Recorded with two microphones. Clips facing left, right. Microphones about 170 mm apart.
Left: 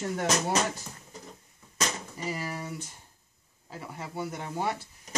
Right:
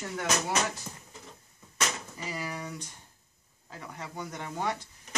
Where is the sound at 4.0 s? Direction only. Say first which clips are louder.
Left 3 dB; 10° left (ahead or behind).